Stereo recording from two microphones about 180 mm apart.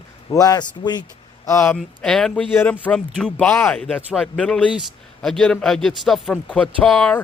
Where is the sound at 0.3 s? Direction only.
20° left (ahead or behind).